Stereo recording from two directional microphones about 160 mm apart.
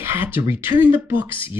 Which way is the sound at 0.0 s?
15° right (ahead or behind).